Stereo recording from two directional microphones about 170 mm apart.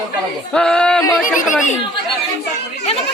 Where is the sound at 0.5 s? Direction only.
5° left (ahead or behind).